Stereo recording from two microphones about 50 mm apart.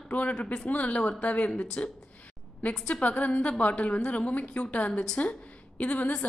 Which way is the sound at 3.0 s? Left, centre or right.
Left.